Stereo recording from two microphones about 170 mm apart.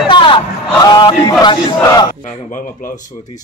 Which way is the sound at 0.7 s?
25° left (ahead or behind).